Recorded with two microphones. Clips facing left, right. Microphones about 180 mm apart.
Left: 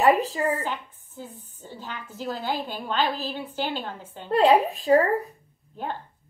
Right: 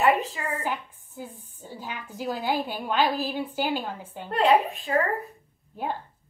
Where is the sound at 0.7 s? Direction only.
15° right (ahead or behind).